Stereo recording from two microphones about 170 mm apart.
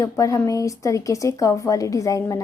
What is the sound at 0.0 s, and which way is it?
Speech, 20° left (ahead or behind).